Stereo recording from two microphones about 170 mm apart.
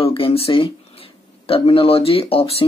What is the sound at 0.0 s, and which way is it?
Speech, 35° left (ahead or behind).